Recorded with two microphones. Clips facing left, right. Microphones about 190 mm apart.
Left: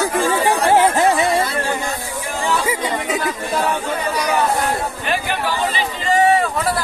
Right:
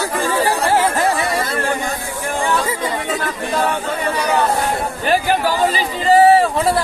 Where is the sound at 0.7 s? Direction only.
20° left (ahead or behind).